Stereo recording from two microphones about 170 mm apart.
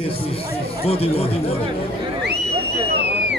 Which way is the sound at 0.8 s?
35° left (ahead or behind).